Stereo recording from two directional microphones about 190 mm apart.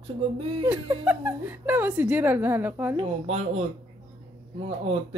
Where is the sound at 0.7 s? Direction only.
10° right (ahead or behind).